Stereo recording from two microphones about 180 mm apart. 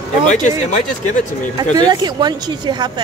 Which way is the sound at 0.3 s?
40° left (ahead or behind).